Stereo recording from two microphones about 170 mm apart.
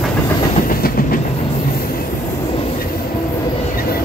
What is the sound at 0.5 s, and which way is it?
Train, 55° left (ahead or behind).